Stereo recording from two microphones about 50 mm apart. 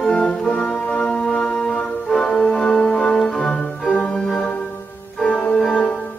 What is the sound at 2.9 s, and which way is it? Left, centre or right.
Organ, centre.